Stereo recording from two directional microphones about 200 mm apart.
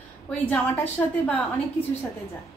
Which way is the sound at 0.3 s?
5° left (ahead or behind).